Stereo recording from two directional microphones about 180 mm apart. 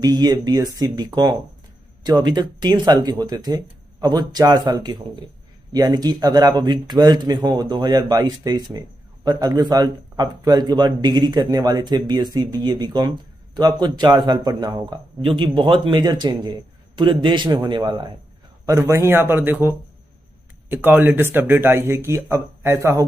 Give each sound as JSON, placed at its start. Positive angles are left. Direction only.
{"t": 0.0, "sound": "speech", "side_deg": -20}